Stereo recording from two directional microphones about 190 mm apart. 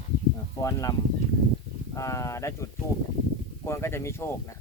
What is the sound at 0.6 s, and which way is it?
Speech, 15° left (ahead or behind).